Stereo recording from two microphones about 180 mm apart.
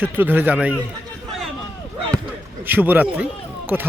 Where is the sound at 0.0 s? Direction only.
10° right (ahead or behind).